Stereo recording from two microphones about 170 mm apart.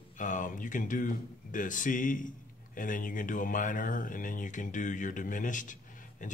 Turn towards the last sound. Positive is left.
turn(degrees=50)  # may be behind; listen again after turning